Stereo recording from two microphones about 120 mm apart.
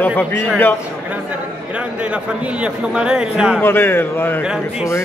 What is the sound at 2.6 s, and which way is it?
Speech, 5° right (ahead or behind).